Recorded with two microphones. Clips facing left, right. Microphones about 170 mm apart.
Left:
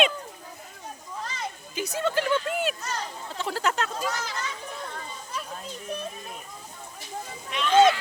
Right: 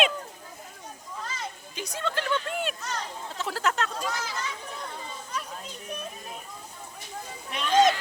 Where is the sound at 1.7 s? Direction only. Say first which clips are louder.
Left 5 dB; 5° left (ahead or behind).